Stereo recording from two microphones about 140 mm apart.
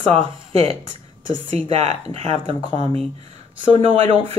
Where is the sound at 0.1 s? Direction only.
45° right (ahead or behind).